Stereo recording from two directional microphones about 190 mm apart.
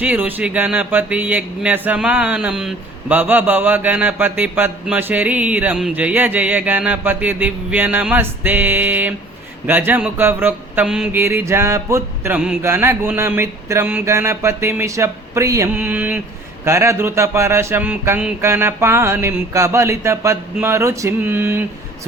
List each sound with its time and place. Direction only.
0.0 s speech: 10° right (ahead or behind)